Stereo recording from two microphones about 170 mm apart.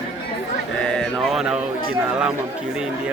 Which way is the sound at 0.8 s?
Centre (ahead or behind).